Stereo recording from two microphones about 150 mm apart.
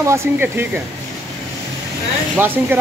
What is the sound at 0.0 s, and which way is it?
Speech, 15° right (ahead or behind).